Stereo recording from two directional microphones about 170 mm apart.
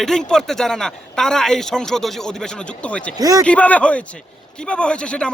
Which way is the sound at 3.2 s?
20° right (ahead or behind).